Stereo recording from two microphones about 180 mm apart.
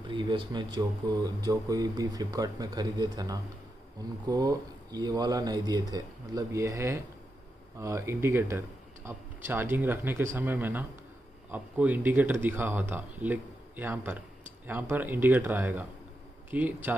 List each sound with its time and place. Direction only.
0.0 s speech: 25° right (ahead or behind); by 16.9 s 10° right (ahead or behind)